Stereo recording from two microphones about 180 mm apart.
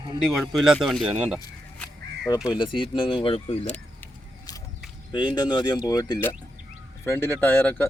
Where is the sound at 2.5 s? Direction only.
25° left (ahead or behind).